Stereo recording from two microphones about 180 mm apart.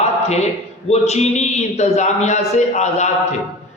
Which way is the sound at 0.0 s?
35° left (ahead or behind).